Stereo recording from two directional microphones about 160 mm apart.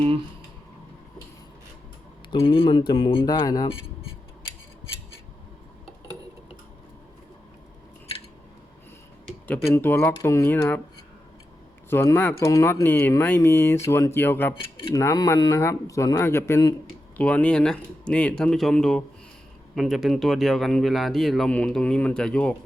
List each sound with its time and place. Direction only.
2.3 s speech: 35° left (ahead or behind)
9.2 s a sound: 5° left (ahead or behind)
9.6 s speech: 15° left (ahead or behind)
11.9 s speech: 15° left (ahead or behind)
17.2 s speech: 10° left (ahead or behind)